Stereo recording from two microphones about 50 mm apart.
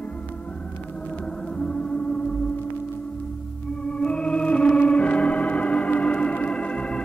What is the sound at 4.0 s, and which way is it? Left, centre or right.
Organ, centre.